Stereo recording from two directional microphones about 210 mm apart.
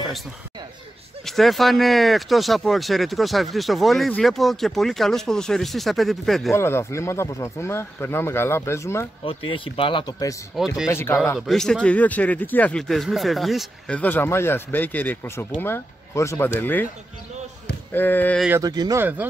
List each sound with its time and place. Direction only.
1.2 s speech: centre (ahead or behind)
6.5 s a man's voice: 10° left (ahead or behind)
9.2 s a man's voice: 25° left (ahead or behind)
10.5 s speech: centre (ahead or behind)
10.9 s a man's voice: 10° left (ahead or behind)
17.9 s a man's voice: 10° left (ahead or behind)
18.6 s speech: 20° right (ahead or behind)